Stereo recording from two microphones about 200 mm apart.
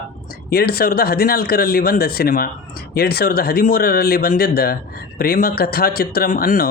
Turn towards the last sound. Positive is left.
turn(degrees=45)  # may be behind; listen again after turning